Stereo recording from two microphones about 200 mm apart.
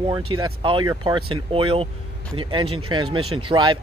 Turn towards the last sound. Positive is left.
turn(degrees=-20)  # may be behind; listen again after turning